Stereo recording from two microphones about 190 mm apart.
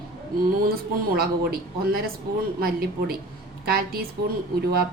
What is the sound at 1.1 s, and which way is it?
Speech, 55° right (ahead or behind).